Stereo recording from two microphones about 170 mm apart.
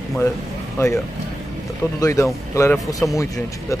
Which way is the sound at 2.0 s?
20° left (ahead or behind).